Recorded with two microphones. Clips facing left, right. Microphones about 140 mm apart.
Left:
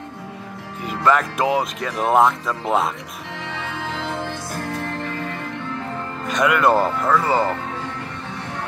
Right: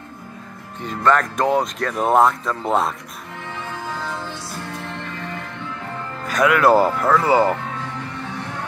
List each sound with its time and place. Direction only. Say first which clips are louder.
0.8 s speech: even; 5° left (ahead or behind)
3.4 s music: even; 85° left; by 4.4 s 55° left (ahead or behind)
6.2 s speech: right 2 dB; centre (ahead or behind)